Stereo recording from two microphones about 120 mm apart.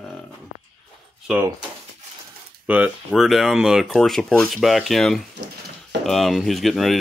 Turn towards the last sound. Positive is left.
turn(degrees=0)  # may be behind; listen again after turning